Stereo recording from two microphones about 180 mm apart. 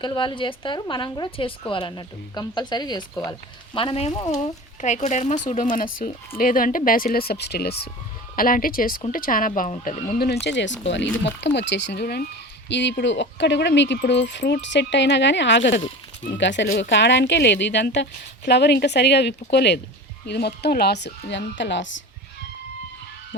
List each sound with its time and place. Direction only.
0.0 s a woman's voice: 25° left (ahead or behind)
4.8 s speech: 40° left (ahead or behind); by 7.8 s 65° left (ahead or behind)
8.4 s speech: 50° left (ahead or behind)
10.2 s speech: 65° left (ahead or behind)
12.6 s speech: 75° left (ahead or behind)